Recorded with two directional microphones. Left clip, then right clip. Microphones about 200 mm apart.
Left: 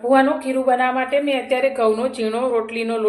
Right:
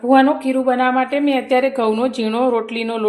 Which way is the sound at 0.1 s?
35° right (ahead or behind).